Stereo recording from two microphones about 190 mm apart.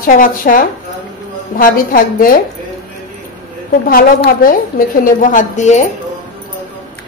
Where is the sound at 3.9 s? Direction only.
50° left (ahead or behind).